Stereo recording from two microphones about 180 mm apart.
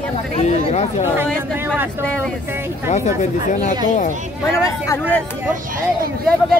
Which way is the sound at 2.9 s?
45° left (ahead or behind).